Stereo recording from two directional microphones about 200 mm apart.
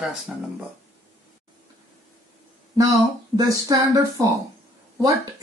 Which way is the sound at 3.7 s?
15° right (ahead or behind).